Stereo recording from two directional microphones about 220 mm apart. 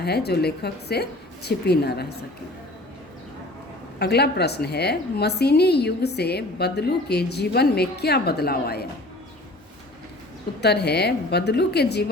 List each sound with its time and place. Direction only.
0.0 s a woman's voice: 45° left (ahead or behind)
3.9 s a woman's voice: 45° left (ahead or behind)
10.6 s a woman's voice: 50° left (ahead or behind)